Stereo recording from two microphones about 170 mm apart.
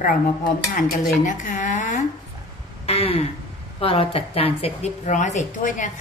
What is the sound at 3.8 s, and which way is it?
A woman's voice, 35° left (ahead or behind).